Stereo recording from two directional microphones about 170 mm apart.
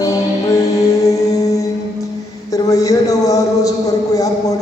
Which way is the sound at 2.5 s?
20° left (ahead or behind).